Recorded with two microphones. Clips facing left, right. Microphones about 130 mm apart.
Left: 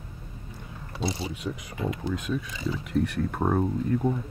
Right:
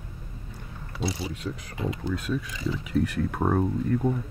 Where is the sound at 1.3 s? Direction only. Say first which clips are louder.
Left 1 dB; 5° left (ahead or behind).